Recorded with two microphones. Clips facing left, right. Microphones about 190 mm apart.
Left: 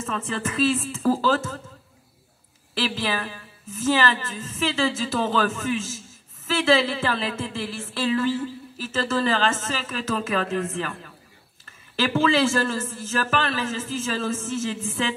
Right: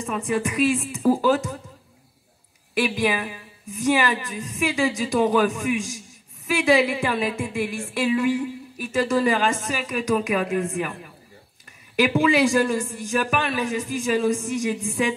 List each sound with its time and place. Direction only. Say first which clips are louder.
0.0 s speech: right 4 dB; 15° right (ahead or behind)
2.7 s a woman's voice: right 4 dB; 15° right (ahead or behind)